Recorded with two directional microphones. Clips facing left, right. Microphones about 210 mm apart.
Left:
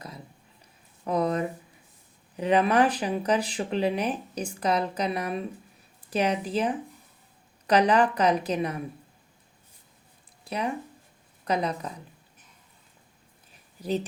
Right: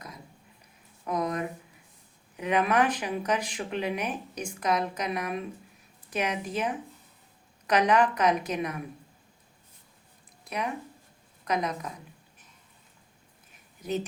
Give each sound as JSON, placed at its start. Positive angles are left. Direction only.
{"t": 1.0, "sound": "a sound", "side_deg": 30}
{"t": 2.3, "sound": "speech", "side_deg": 30}
{"t": 10.4, "sound": "speech", "side_deg": 30}